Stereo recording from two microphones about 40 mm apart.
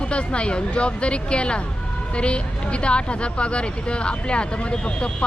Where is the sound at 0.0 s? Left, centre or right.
Left.